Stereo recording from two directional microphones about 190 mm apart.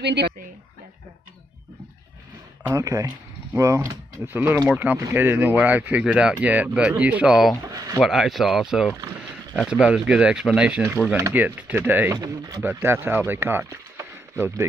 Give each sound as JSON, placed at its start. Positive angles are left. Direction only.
{"t": 0.0, "sound": "speech", "side_deg": -65}
{"t": 2.7, "sound": "speech", "side_deg": -20}
{"t": 7.6, "sound": "speech", "side_deg": -15}
{"t": 8.0, "sound": "speech", "side_deg": 0}